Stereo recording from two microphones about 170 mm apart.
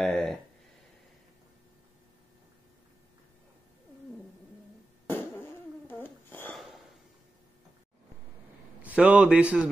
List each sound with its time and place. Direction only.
0.0 s a sound: centre (ahead or behind)
5.0 s fart: 10° left (ahead or behind)
6.5 s snort: centre (ahead or behind)
8.8 s a man's voice: 5° right (ahead or behind)